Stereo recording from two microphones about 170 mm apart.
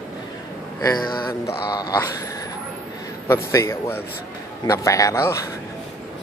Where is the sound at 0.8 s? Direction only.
25° left (ahead or behind).